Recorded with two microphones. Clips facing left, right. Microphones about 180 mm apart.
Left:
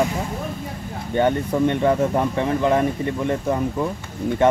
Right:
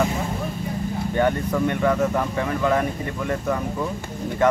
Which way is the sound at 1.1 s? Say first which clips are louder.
Left 3 dB; 25° left (ahead or behind).